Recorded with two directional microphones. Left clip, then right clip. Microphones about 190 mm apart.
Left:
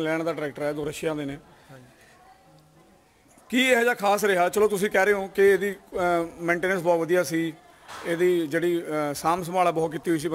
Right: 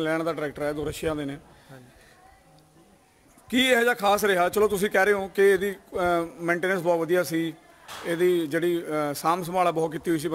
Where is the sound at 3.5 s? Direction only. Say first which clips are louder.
Even; centre (ahead or behind).